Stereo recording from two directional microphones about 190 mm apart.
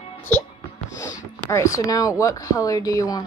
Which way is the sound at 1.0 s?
15° left (ahead or behind).